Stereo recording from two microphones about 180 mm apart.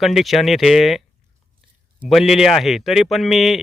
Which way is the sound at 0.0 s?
Centre (ahead or behind).